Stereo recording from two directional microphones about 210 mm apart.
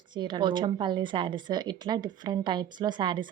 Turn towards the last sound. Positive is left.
turn(degrees=-20)  # may be behind; listen again after turning